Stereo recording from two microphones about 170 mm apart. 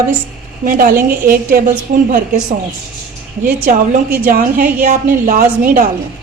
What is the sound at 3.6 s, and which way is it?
A woman's voice, 50° right (ahead or behind).